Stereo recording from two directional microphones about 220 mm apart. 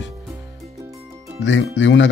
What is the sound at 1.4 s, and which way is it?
Speech, 55° left (ahead or behind).